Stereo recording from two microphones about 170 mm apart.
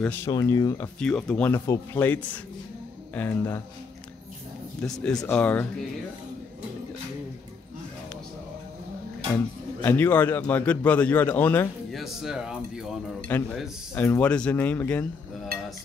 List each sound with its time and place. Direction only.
0.0 s speech: 10° left (ahead or behind)
0.3 s speech: 20° left (ahead or behind)
0.9 s speech: 5° left (ahead or behind)
4.8 s speech: 5° left (ahead or behind)
9.8 s speech: 10° left (ahead or behind)
11.9 s speech: centre (ahead or behind)
13.3 s speech: 5° left (ahead or behind)